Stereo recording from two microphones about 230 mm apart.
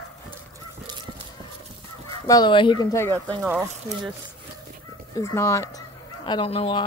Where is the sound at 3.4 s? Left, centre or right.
Centre.